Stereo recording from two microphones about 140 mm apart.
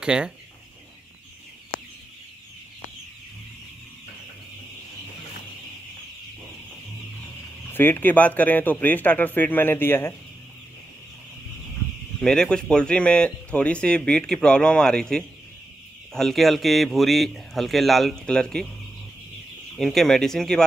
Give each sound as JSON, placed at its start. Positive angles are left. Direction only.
{"t": 0.0, "sound": "speech", "side_deg": -5}
{"t": 7.7, "sound": "speech", "side_deg": 15}
{"t": 12.2, "sound": "speech", "side_deg": 5}
{"t": 19.8, "sound": "speech", "side_deg": 0}